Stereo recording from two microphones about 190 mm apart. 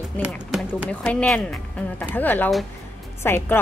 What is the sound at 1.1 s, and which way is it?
Speech, 5° left (ahead or behind).